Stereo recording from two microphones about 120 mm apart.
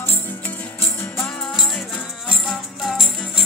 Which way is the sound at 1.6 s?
Centre (ahead or behind).